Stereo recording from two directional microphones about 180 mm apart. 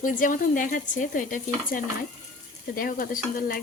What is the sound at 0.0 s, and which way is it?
Stir, 50° left (ahead or behind).